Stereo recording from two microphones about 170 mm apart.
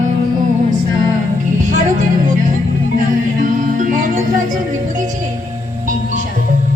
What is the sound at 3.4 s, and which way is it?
Music, 50° right (ahead or behind).